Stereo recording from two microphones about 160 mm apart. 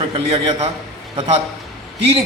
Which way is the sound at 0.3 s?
30° right (ahead or behind).